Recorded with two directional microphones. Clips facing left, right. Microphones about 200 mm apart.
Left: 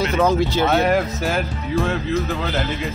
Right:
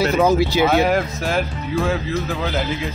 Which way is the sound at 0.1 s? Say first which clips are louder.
Right 2 dB; 10° right (ahead or behind).